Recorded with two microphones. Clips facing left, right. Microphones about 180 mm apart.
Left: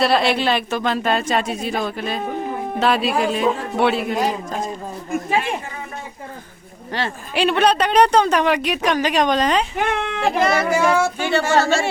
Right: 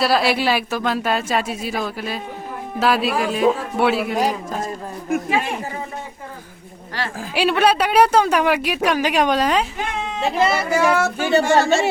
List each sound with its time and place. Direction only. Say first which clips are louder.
0.0 s speech: left 1 dB; 5° right (ahead or behind)
7.3 s speech: even; 5° right (ahead or behind)
9.7 s speech: left 4 dB; 65° left (ahead or behind)
10.5 s speech: left 1 dB; 10° right (ahead or behind)